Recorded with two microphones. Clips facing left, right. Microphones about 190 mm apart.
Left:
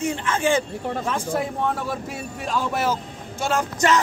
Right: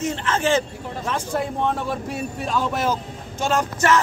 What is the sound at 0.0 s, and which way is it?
A man's voice, 10° left (ahead or behind).